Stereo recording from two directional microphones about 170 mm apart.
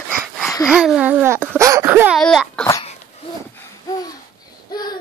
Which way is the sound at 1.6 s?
20° right (ahead or behind).